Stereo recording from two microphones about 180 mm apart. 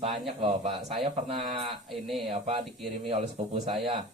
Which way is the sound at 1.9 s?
Centre (ahead or behind).